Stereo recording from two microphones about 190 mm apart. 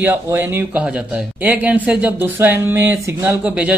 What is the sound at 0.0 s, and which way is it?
A man's voice, 10° right (ahead or behind).